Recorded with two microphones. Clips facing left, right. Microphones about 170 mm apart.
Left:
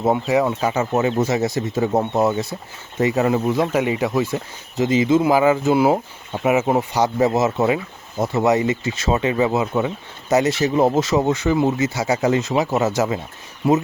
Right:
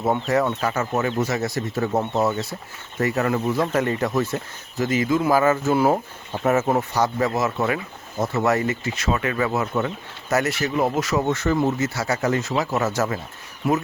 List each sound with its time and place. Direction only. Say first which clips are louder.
0.0 s speech: left 3 dB; 10° left (ahead or behind)